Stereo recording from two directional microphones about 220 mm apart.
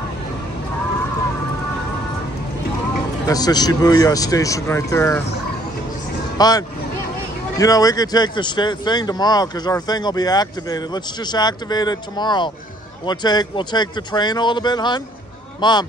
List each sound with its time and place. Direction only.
3.3 s speech: 15° left (ahead or behind)
6.3 s speech: 20° left (ahead or behind)